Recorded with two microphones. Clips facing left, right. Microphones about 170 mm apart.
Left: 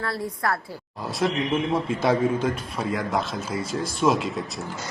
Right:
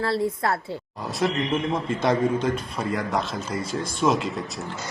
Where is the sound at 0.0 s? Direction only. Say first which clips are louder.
Right 4 dB; 25° right (ahead or behind).